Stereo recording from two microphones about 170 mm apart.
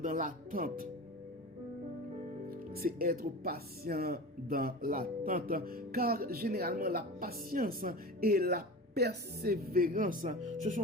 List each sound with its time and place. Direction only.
0.0 s speech: 45° right (ahead or behind)
2.5 s speech: 60° right (ahead or behind)